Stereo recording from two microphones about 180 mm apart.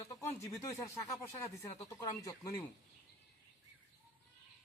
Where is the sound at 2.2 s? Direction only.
20° left (ahead or behind).